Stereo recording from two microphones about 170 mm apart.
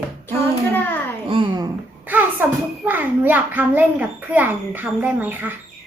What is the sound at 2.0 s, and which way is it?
A child's voice, 10° right (ahead or behind).